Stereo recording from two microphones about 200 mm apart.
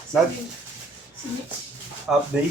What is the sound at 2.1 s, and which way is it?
Speech, 5° right (ahead or behind).